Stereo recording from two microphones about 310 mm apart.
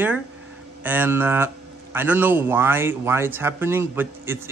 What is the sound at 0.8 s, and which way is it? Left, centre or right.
Speech, centre.